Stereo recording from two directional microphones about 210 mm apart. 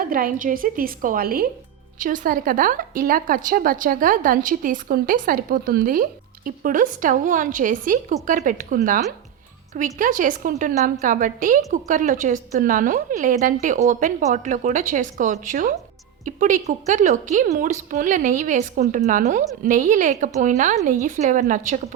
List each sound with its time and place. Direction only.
0.0 s a woman's voice: 45° right (ahead or behind)